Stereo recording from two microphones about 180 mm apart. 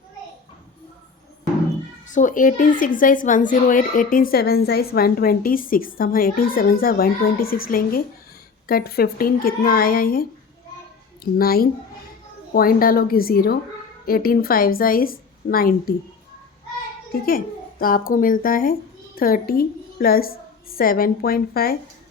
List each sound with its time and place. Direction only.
2.0 s a woman's voice: 45° left (ahead or behind)
17.2 s speech: 55° left (ahead or behind)